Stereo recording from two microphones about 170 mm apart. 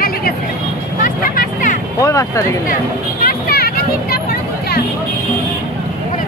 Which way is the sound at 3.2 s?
65° left (ahead or behind).